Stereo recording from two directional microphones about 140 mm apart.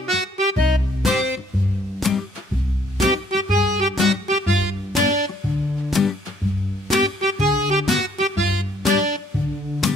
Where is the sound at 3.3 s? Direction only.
65° right (ahead or behind).